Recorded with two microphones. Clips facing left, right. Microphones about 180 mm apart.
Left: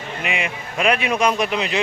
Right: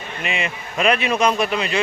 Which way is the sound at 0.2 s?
15° left (ahead or behind).